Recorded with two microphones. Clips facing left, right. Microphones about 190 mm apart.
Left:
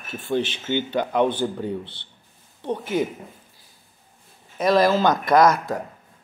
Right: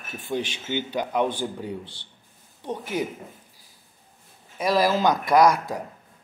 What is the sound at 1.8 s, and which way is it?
Speech, 25° left (ahead or behind).